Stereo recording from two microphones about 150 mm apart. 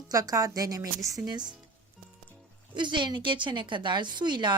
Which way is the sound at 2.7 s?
30° right (ahead or behind).